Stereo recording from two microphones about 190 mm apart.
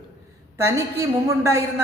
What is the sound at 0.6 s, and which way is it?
Speech, 15° right (ahead or behind).